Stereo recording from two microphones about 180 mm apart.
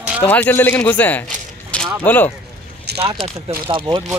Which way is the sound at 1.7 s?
5° left (ahead or behind).